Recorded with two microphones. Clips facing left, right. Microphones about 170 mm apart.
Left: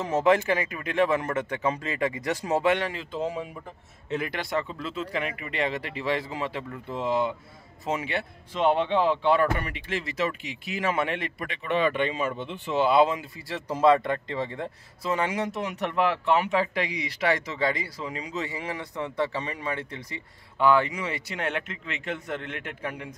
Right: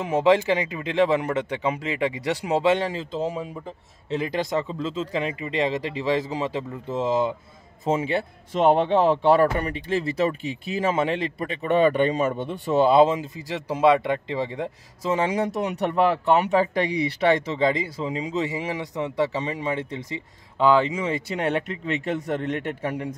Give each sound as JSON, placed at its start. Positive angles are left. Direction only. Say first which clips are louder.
{"t": 0.0, "sound": "speech", "louder": "right 3 dB", "side_deg": -15}
{"t": 8.5, "sound": "speech", "louder": "right 4 dB", "side_deg": -45}
{"t": 13.7, "sound": "speech", "louder": "right 2 dB", "side_deg": -10}
{"t": 15.5, "sound": "speech", "louder": "right 5 dB", "side_deg": -35}